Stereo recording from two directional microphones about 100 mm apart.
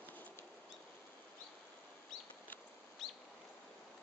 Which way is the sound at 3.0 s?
Centre (ahead or behind).